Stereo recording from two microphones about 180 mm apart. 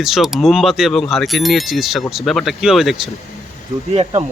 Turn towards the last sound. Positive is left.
turn(degrees=-35)  # may be behind; listen again after turning